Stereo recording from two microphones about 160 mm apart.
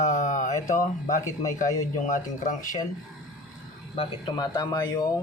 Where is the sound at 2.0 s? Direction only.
50° left (ahead or behind).